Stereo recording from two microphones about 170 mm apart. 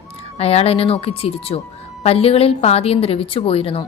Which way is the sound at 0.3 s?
35° left (ahead or behind).